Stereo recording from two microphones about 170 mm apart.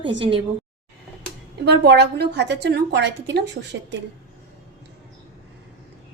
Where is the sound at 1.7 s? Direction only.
85° right.